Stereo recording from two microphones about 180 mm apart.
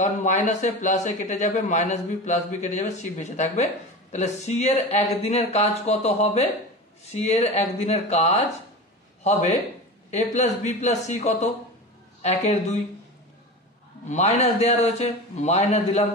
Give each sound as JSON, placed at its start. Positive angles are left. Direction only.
{"t": 0.0, "sound": "speech", "side_deg": 40}
{"t": 14.0, "sound": "speech", "side_deg": 40}